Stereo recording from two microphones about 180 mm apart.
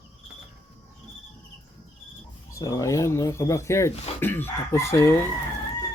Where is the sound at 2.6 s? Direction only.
15° left (ahead or behind).